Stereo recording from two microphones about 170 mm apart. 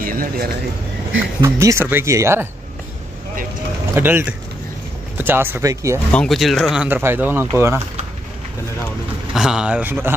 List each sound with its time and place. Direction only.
0.0 s speech: 55° right (ahead or behind)
1.4 s speech: 20° right (ahead or behind)
3.9 s speech: 10° right (ahead or behind)
6.1 s speech: centre (ahead or behind); by 7.8 s 15° right (ahead or behind)
9.3 s speech: 5° right (ahead or behind)